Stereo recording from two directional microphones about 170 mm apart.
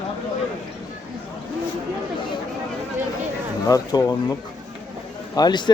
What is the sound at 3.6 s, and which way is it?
Speech, 20° left (ahead or behind).